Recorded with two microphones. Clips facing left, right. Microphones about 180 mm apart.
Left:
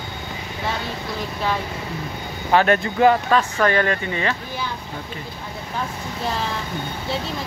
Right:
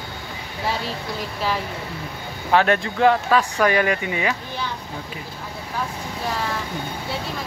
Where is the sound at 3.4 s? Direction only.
10° right (ahead or behind).